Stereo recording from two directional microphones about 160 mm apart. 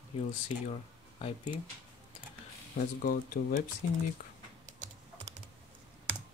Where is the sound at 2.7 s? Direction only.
65° left (ahead or behind).